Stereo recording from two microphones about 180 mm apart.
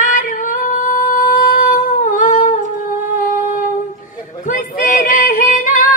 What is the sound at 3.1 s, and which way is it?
Humming, 45° left (ahead or behind).